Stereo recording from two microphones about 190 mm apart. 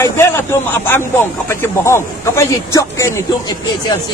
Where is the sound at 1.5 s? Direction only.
15° left (ahead or behind).